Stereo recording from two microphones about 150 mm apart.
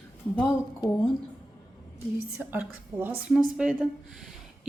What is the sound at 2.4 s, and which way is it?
A woman's voice, 10° right (ahead or behind).